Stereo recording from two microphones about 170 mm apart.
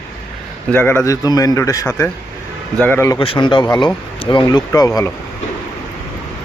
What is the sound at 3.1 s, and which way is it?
Speech, 30° left (ahead or behind).